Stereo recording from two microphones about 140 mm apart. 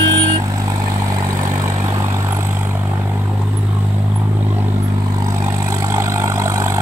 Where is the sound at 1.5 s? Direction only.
15° right (ahead or behind).